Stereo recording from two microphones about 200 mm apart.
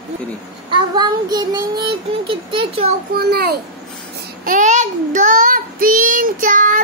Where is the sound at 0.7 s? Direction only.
20° right (ahead or behind).